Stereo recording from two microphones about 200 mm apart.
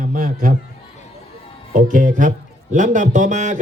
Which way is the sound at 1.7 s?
40° right (ahead or behind).